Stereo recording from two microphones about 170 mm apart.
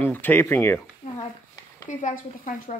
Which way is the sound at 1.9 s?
45° left (ahead or behind).